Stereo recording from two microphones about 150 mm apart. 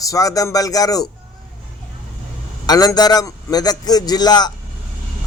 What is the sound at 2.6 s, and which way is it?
Speech, 25° left (ahead or behind).